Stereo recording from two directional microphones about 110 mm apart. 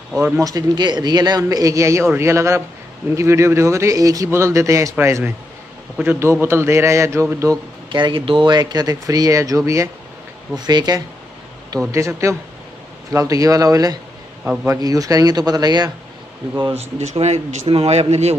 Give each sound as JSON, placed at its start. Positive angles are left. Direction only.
{"t": 0.2, "sound": "a man's voice", "side_deg": -30}
{"t": 7.9, "sound": "a man's voice", "side_deg": -50}
{"t": 11.9, "sound": "a man's voice", "side_deg": -25}
{"t": 14.4, "sound": "a man's voice", "side_deg": -10}
{"t": 14.7, "sound": "a man's voice", "side_deg": -35}
{"t": 16.7, "sound": "speech", "side_deg": -85}
{"t": 17.6, "sound": "speech", "side_deg": -65}